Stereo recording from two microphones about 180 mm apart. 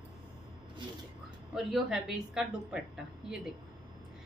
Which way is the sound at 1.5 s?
Centre (ahead or behind).